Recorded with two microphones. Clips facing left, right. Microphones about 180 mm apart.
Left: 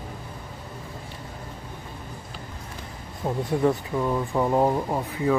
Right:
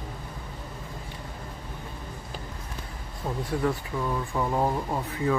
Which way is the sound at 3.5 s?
25° left (ahead or behind).